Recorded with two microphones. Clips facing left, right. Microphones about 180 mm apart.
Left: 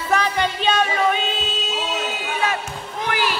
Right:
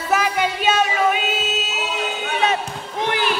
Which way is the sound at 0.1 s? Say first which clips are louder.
Right 1 dB; 5° right (ahead or behind).